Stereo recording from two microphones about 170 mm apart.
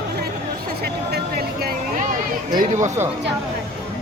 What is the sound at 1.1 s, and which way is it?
Speech, 65° right (ahead or behind).